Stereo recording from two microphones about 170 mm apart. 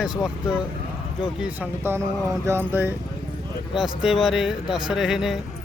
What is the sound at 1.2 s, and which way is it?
Speech, 5° right (ahead or behind).